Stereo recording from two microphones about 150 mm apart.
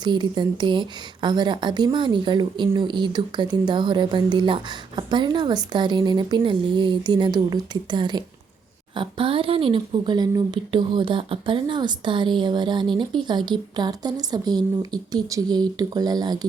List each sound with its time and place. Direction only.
0.0 s a woman's voice: 30° right (ahead or behind)